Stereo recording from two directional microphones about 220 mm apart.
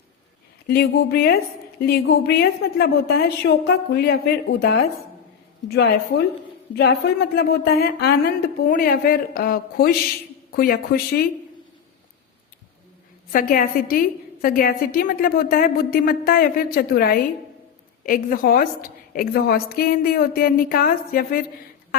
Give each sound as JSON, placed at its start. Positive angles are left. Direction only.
{"t": 0.7, "sound": "speech", "side_deg": 45}
{"t": 13.3, "sound": "a woman's voice", "side_deg": 40}